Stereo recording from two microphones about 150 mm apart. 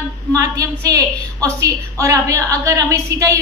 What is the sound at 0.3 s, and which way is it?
A woman's voice, 25° right (ahead or behind).